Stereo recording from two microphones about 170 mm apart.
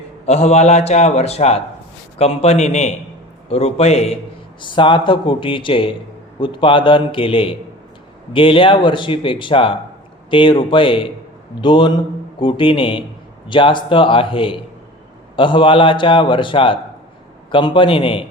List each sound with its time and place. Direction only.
0.3 s speech: 40° left (ahead or behind)